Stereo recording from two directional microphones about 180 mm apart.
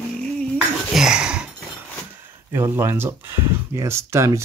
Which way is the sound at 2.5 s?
15° right (ahead or behind).